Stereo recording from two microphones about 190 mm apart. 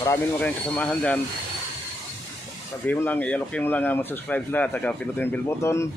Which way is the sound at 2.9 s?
10° left (ahead or behind).